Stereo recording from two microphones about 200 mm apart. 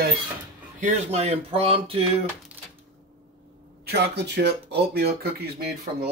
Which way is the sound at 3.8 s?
55° right (ahead or behind).